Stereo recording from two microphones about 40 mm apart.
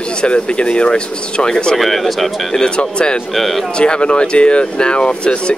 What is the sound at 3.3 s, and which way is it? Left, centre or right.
Speech, centre.